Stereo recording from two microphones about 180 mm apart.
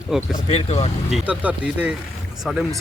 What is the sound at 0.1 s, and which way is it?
Speech, 5° right (ahead or behind).